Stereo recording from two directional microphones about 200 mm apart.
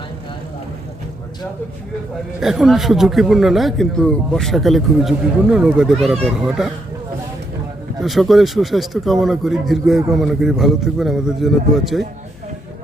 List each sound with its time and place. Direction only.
2.4 s speech: centre (ahead or behind)
8.0 s speech: centre (ahead or behind)